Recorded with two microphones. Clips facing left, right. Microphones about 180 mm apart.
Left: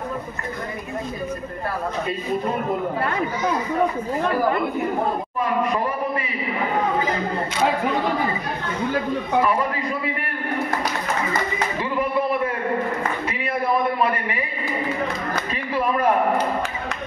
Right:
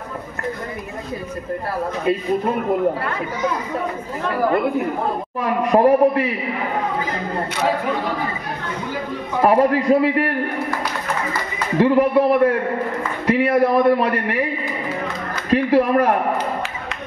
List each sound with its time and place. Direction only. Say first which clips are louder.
5.4 s a man's voice: right 8 dB; 70° right (ahead or behind)
9.4 s a man's voice: right 10 dB; 65° right (ahead or behind); by 10.3 s 90° right
11.8 s a man's voice: right 10 dB; 75° right (ahead or behind)
15.5 s speech: right 10 dB; 70° right (ahead or behind)